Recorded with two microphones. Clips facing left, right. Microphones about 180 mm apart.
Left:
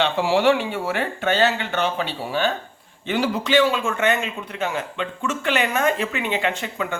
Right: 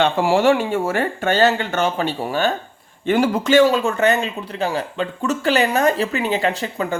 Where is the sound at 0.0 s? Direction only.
50° right (ahead or behind).